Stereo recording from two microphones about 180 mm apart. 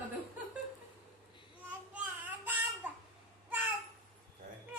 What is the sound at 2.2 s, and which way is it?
Child singing, 10° right (ahead or behind).